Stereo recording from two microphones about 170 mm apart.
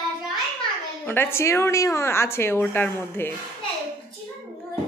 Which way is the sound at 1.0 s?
15° left (ahead or behind).